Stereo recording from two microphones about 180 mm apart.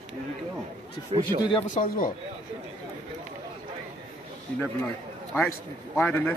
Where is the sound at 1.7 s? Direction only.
50° left (ahead or behind).